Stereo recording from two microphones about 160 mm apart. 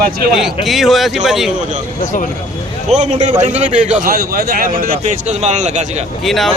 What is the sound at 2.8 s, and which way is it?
A man's voice, 45° right (ahead or behind).